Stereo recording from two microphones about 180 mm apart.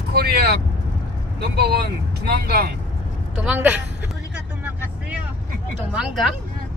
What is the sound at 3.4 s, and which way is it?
Speech, 5° right (ahead or behind).